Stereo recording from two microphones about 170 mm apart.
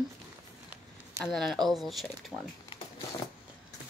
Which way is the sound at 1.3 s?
Centre (ahead or behind).